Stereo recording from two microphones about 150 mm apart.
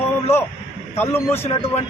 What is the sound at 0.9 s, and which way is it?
Speech, 15° left (ahead or behind).